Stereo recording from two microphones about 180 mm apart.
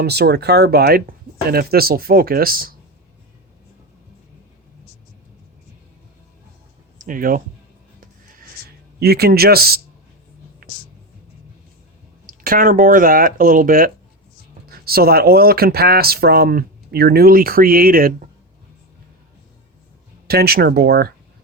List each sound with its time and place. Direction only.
0.0 s speech: 65° right (ahead or behind)
7.0 s speech: 50° right (ahead or behind)
8.0 s music: 50° right (ahead or behind)
9.0 s speech: 60° right (ahead or behind)
10.6 s a sound: 55° right (ahead or behind)
12.2 s speech: 50° right (ahead or behind)
20.2 s speech: 60° right (ahead or behind)